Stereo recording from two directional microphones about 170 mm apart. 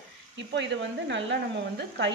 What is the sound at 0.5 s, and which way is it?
Speech, 90° right.